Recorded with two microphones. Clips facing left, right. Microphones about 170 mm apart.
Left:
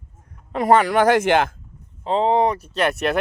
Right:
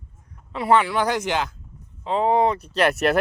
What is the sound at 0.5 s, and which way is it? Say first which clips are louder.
Speech: left 3 dB; 45° left (ahead or behind).